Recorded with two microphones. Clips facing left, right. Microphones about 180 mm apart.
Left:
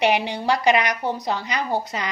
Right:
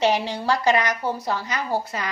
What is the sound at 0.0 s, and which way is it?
Speech, 15° left (ahead or behind).